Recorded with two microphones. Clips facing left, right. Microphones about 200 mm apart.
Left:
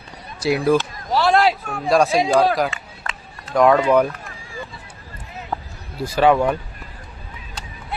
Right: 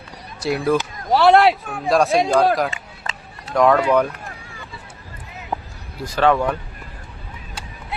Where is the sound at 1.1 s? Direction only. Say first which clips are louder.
Right 4 dB; 60° right (ahead or behind).